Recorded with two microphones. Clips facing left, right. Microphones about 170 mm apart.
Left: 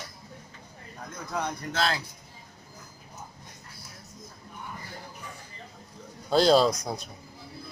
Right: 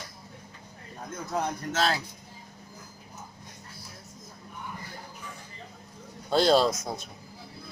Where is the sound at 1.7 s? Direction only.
40° right (ahead or behind).